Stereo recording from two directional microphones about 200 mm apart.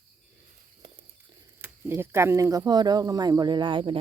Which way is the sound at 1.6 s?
10° right (ahead or behind).